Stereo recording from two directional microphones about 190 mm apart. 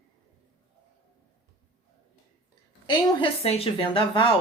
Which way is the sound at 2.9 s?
30° left (ahead or behind).